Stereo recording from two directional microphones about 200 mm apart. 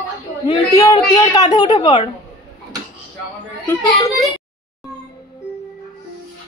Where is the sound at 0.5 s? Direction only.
15° left (ahead or behind).